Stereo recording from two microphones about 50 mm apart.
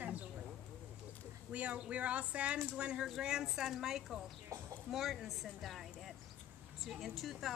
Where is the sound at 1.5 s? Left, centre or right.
Right; by 4.2 s centre.